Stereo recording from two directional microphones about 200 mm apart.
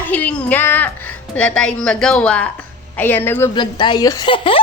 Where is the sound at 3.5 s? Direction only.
25° left (ahead or behind).